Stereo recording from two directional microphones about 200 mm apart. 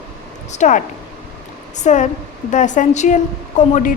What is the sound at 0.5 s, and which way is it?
A woman's voice, 35° left (ahead or behind).